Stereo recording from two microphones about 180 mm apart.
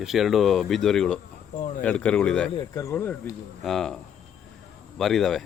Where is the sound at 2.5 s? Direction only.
20° left (ahead or behind); by 4.0 s centre (ahead or behind).